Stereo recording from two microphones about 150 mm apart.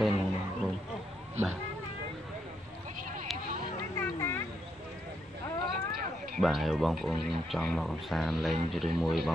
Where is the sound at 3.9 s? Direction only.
15° left (ahead or behind).